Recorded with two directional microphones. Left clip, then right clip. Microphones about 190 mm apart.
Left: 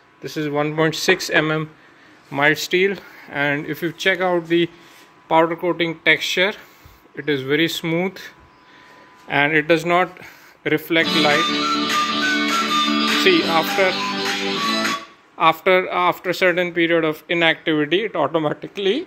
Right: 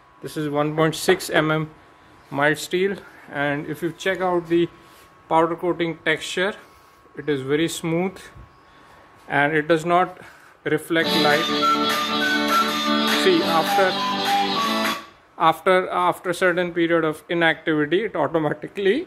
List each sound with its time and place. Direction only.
0.2 s speech: 5° right (ahead or behind)
2.3 s speech: centre (ahead or behind)
9.3 s speech: centre (ahead or behind)
11.6 s music: 10° left (ahead or behind)
13.2 s speech: centre (ahead or behind)
14.2 s music: 25° left (ahead or behind)
15.3 s speech: 10° right (ahead or behind)